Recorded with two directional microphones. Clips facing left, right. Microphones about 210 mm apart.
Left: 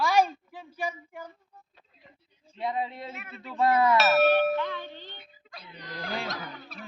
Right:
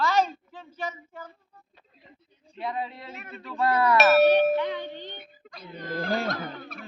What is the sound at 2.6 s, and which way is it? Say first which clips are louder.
Speech: left 1 dB; 20° left (ahead or behind).